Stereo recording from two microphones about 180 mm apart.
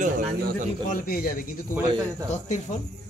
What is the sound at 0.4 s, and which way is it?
Speech, 55° right (ahead or behind).